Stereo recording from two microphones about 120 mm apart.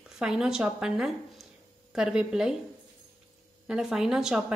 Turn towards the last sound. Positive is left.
turn(degrees=-5)  # may be behind; listen again after turning